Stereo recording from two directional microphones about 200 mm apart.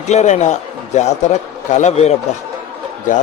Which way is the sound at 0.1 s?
35° left (ahead or behind).